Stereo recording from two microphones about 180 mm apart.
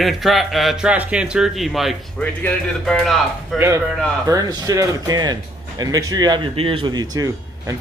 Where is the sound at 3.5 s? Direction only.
15° right (ahead or behind).